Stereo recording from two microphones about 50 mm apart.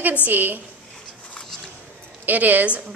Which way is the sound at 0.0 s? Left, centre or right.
Right.